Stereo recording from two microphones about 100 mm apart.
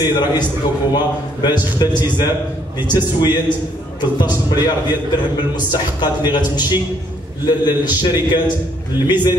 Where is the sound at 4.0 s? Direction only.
45° left (ahead or behind).